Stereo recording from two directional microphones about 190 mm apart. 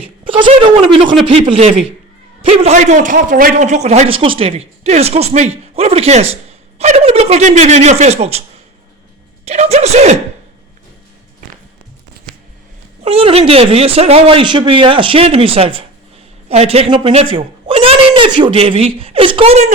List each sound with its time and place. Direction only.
0.3 s a man's voice: 25° right (ahead or behind)
13.1 s speech: 30° right (ahead or behind)